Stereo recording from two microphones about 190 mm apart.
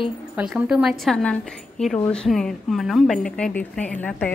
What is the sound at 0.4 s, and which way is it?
A woman's voice, 5° right (ahead or behind).